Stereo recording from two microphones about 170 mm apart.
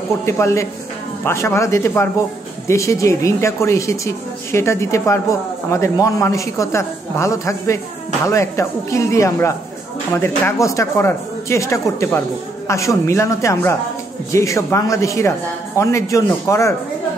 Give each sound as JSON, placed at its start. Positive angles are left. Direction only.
{"t": 0.2, "sound": "a woman's voice", "side_deg": 15}